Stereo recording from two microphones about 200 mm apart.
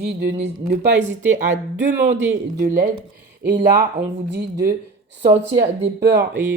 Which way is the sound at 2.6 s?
40° right (ahead or behind).